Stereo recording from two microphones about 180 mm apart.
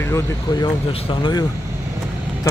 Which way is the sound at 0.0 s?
15° left (ahead or behind).